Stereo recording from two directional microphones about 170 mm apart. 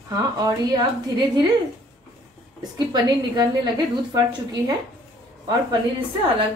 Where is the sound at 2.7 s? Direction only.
25° right (ahead or behind).